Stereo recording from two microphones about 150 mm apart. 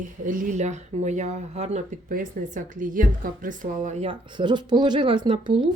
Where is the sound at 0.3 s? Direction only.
60° right (ahead or behind); by 1.8 s 45° right (ahead or behind).